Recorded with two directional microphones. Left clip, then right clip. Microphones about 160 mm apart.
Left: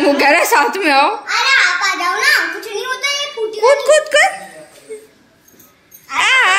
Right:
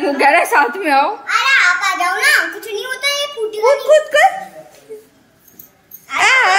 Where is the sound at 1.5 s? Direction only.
65° right (ahead or behind).